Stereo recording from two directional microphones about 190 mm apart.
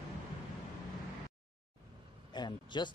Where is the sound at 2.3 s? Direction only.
25° left (ahead or behind).